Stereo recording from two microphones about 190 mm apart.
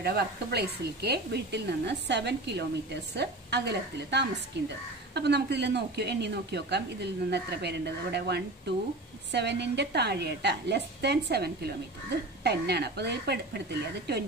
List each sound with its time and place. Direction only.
0.0 s a woman's voice: 55° right (ahead or behind)